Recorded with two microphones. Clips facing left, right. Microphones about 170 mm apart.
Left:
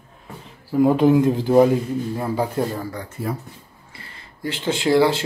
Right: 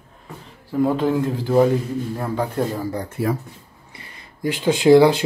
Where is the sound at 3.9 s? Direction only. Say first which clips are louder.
Even; 20° right (ahead or behind).